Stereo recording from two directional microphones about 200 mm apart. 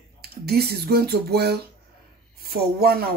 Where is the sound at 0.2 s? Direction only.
50° right (ahead or behind).